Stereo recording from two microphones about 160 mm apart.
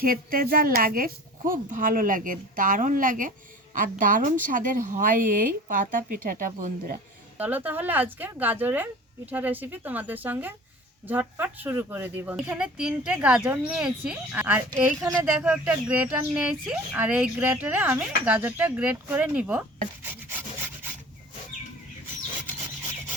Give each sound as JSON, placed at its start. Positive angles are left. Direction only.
{"t": 0.0, "sound": "speech", "side_deg": -60}
{"t": 7.3, "sound": "speech", "side_deg": -10}
{"t": 15.0, "sound": "speech", "side_deg": -20}
{"t": 15.4, "sound": "speech", "side_deg": -10}